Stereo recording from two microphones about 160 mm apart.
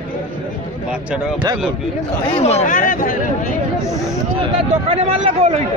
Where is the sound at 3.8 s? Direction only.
20° left (ahead or behind).